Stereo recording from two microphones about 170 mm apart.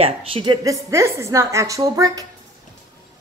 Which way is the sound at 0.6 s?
15° right (ahead or behind).